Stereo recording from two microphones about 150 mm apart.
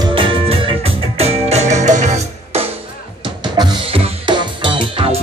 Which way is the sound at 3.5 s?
30° right (ahead or behind).